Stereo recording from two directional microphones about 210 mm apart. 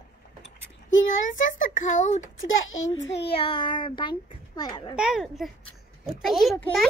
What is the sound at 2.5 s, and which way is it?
Speech, 65° left (ahead or behind).